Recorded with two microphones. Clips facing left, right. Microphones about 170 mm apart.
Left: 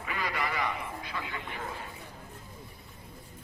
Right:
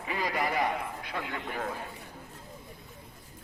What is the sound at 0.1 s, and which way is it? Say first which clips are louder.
A man's voice: right 3 dB; 35° right (ahead or behind).